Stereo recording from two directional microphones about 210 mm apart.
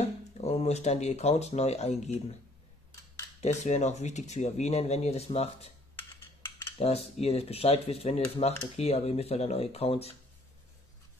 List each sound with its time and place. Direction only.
0.0 s speech: 30° left (ahead or behind)
3.3 s speech: 35° left (ahead or behind)
5.9 s a sound: 10° left (ahead or behind)
6.8 s speech: 30° left (ahead or behind)